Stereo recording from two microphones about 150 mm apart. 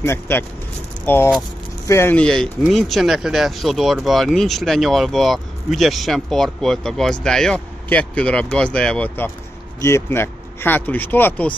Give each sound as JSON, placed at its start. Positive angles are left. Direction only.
{"t": 0.0, "sound": "speech", "side_deg": 15}